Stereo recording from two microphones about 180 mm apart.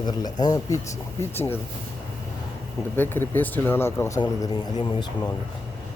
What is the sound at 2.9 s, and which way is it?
Speech, 10° left (ahead or behind).